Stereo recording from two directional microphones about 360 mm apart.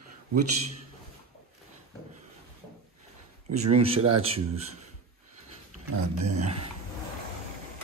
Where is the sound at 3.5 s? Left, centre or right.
Centre.